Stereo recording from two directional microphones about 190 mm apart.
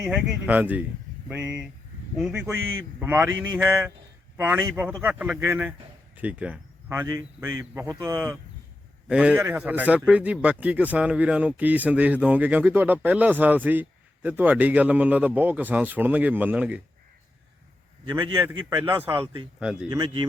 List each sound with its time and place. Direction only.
0.0 s a man's voice: 5° right (ahead or behind); by 8.4 s 20° right (ahead or behind)
9.0 s a man's voice: 5° right (ahead or behind)
18.0 s speech: 25° right (ahead or behind)
18.9 s a man's voice: 10° right (ahead or behind)
19.9 s speech: 25° right (ahead or behind)